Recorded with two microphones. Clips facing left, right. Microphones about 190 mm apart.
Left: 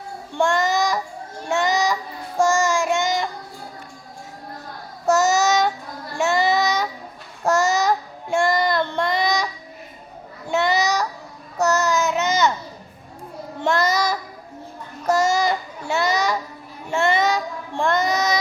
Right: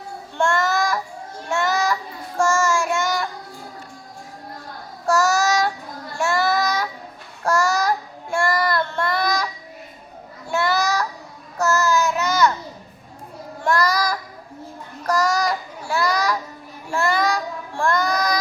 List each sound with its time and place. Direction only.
0.3 s child singing: 15° left (ahead or behind)
5.0 s child singing: 20° left (ahead or behind)
10.4 s babbling: 20° left (ahead or behind)
11.5 s child singing: 20° left (ahead or behind)
13.6 s child singing: 25° left (ahead or behind)